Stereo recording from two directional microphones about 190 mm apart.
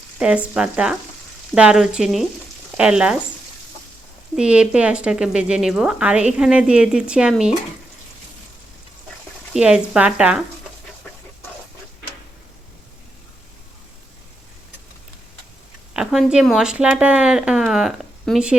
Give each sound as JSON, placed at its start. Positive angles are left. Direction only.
{"t": 0.2, "sound": "speech", "side_deg": -5}
{"t": 4.4, "sound": "speech", "side_deg": -5}
{"t": 9.5, "sound": "speech", "side_deg": -5}
{"t": 15.9, "sound": "speech", "side_deg": -5}